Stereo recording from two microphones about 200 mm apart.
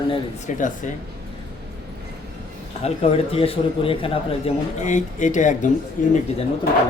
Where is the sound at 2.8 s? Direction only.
30° left (ahead or behind).